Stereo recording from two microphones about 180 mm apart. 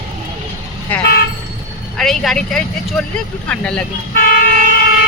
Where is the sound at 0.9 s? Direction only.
10° left (ahead or behind).